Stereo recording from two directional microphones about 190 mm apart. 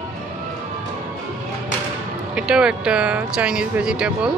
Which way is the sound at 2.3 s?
5° right (ahead or behind).